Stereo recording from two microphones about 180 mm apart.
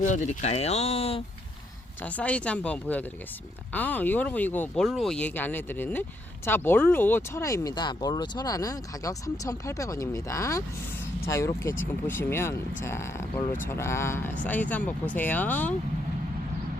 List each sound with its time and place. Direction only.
0.0 s speech: 45° left (ahead or behind)
2.0 s speech: 5° left (ahead or behind)